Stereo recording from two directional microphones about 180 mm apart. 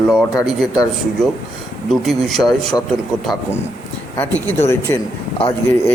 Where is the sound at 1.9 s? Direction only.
Centre (ahead or behind).